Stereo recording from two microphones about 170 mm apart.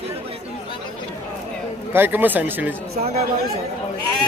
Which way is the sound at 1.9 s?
10° right (ahead or behind).